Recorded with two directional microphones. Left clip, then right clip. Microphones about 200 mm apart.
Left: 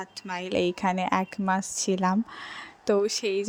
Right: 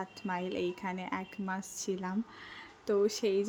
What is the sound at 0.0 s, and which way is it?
A woman's voice, 45° left (ahead or behind).